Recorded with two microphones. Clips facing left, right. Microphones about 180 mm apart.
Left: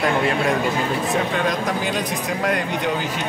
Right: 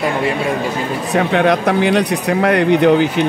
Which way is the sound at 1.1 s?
65° right (ahead or behind).